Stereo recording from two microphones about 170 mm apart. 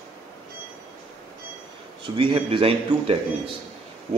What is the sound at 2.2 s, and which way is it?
A man's voice, 30° right (ahead or behind).